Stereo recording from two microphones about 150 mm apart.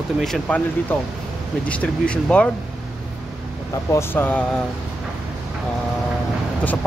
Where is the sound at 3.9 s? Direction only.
15° left (ahead or behind).